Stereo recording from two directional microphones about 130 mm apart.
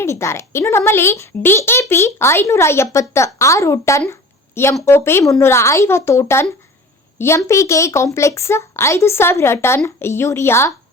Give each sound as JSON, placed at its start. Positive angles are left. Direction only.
{"t": 0.0, "sound": "a child's voice", "side_deg": 20}